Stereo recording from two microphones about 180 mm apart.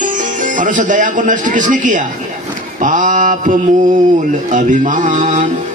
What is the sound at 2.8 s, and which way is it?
Music, 45° right (ahead or behind).